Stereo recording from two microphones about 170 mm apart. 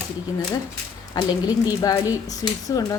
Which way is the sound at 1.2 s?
25° left (ahead or behind).